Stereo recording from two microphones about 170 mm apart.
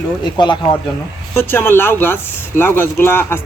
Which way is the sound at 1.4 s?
15° left (ahead or behind).